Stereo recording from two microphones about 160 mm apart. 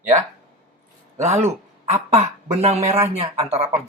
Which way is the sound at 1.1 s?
45° right (ahead or behind).